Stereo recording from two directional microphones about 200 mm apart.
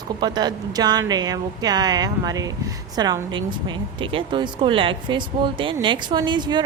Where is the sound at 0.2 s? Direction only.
20° right (ahead or behind).